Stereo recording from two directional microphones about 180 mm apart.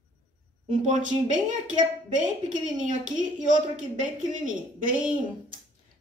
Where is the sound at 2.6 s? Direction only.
45° right (ahead or behind).